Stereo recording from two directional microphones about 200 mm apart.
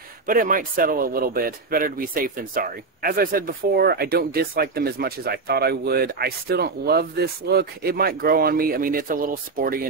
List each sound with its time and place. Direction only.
0.3 s speech: 45° right (ahead or behind)